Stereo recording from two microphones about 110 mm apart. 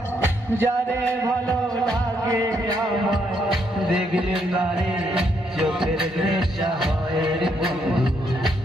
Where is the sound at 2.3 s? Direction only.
35° right (ahead or behind).